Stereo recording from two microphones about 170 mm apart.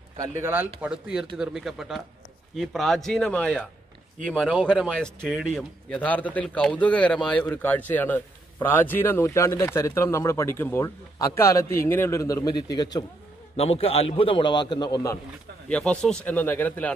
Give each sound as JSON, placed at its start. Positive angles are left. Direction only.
{"t": 0.2, "sound": "a man's voice", "side_deg": -15}
{"t": 13.6, "sound": "a man's voice", "side_deg": 35}
{"t": 15.7, "sound": "a man's voice", "side_deg": 5}